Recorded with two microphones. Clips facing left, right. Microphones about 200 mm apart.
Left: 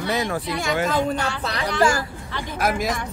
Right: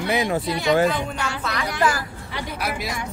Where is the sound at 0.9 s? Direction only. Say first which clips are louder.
Left 5 dB; 40° left (ahead or behind).